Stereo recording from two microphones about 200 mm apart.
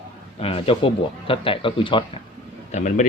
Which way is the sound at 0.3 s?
30° left (ahead or behind).